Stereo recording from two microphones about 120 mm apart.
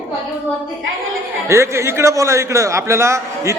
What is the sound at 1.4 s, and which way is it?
A man's voice, 25° right (ahead or behind).